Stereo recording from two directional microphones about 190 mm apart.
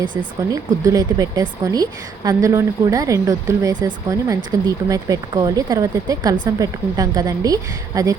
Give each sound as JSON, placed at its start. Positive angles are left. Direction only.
{"t": 0.2, "sound": "speech", "side_deg": -20}